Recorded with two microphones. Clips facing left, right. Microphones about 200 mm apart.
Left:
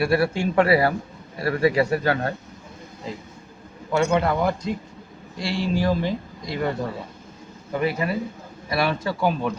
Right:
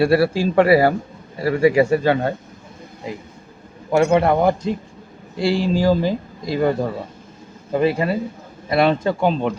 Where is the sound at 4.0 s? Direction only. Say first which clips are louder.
Right 5 dB; 25° right (ahead or behind).